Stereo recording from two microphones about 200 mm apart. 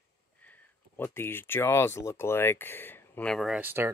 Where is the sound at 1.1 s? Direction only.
10° left (ahead or behind).